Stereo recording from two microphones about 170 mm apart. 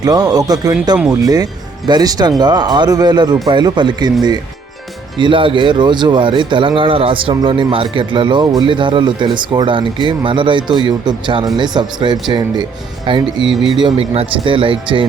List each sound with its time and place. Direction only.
0.0 s speech: 20° right (ahead or behind)